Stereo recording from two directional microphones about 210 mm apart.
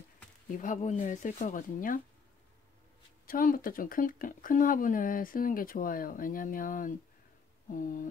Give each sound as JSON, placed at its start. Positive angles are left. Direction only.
{"t": 0.6, "sound": "speech", "side_deg": 40}
{"t": 3.3, "sound": "speech", "side_deg": 40}